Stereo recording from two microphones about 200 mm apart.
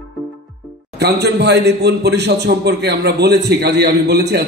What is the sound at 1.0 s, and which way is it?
A man's voice, 55° right (ahead or behind).